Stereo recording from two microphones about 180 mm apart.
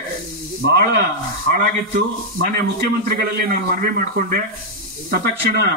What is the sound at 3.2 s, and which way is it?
Speech, 50° right (ahead or behind).